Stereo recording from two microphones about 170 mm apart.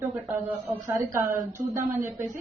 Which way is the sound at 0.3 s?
10° right (ahead or behind).